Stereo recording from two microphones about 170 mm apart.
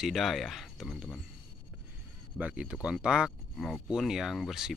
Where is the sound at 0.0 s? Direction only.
Centre (ahead or behind).